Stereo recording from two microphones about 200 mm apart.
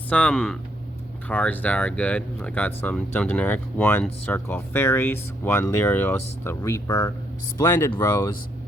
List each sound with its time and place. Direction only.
0.1 s speech: 5° left (ahead or behind)